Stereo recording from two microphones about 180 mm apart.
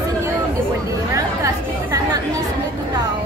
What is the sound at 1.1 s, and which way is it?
Speech, 15° right (ahead or behind).